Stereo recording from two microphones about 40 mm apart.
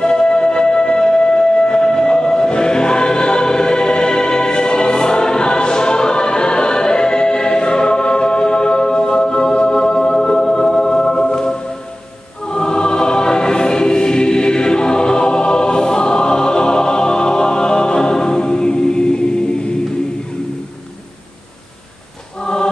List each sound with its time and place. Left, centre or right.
0.0 s music: centre
12.4 s choir: left
22.4 s music: centre